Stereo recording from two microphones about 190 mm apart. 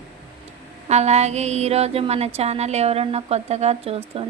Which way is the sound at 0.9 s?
35° right (ahead or behind).